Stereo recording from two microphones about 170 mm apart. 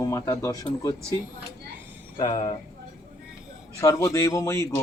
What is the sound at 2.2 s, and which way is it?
Speech, 30° left (ahead or behind).